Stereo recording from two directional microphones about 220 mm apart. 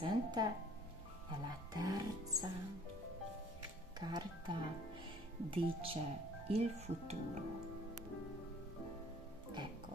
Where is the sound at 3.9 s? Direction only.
20° right (ahead or behind).